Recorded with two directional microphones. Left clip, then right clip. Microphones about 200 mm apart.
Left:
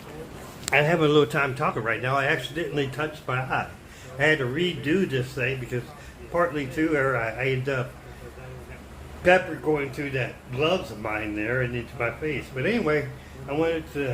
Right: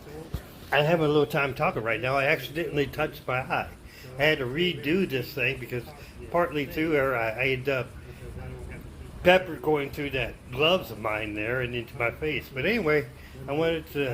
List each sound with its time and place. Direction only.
0.8 s speech: 15° right (ahead or behind)
1.3 s a man's voice: 20° right (ahead or behind)
9.2 s speech: 40° right (ahead or behind)